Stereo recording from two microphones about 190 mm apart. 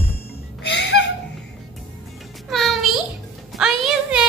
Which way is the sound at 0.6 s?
65° left (ahead or behind).